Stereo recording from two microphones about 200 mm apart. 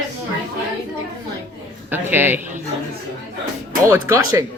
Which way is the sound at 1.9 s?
10° right (ahead or behind).